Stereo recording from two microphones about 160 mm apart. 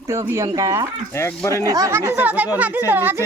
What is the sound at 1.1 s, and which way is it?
Speech, 15° left (ahead or behind).